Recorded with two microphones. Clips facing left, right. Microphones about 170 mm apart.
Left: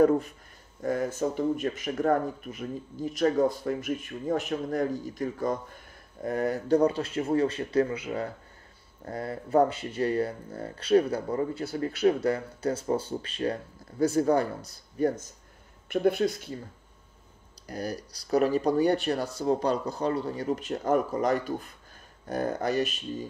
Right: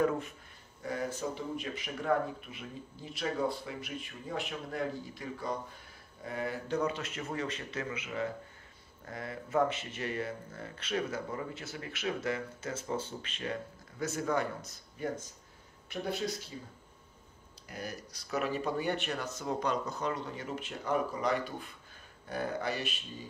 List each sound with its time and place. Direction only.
0.8 s speech: 45° left (ahead or behind)
15.9 s speech: 55° left (ahead or behind)
17.6 s speech: 35° left (ahead or behind)